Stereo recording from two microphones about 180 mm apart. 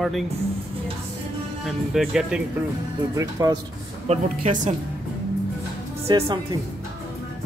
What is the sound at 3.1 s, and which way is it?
Speech, 20° right (ahead or behind).